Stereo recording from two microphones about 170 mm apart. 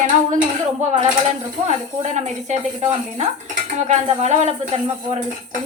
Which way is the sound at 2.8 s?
30° right (ahead or behind).